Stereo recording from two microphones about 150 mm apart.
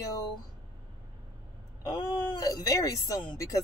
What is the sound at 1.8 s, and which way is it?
Speech, 25° left (ahead or behind).